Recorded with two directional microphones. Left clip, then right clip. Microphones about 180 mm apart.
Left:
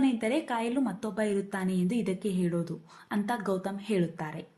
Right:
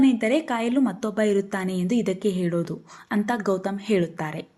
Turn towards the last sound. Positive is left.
turn(degrees=-35)  # may be behind; listen again after turning